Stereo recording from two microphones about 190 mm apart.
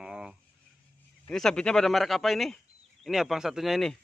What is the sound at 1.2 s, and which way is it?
Speech, 5° left (ahead or behind).